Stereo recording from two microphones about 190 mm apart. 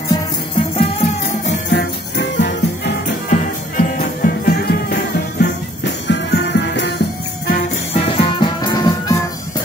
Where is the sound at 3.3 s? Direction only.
45° left (ahead or behind); by 7.0 s 65° left (ahead or behind).